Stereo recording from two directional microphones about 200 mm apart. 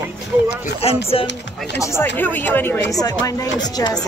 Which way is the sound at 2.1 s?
10° left (ahead or behind).